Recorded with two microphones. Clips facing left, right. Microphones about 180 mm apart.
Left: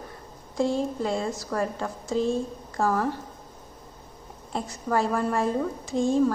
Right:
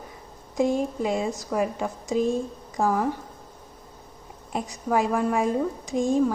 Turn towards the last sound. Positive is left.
turn(degrees=-15)  # may be behind; listen again after turning